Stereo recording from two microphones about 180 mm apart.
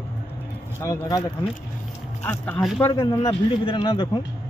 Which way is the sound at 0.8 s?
20° left (ahead or behind).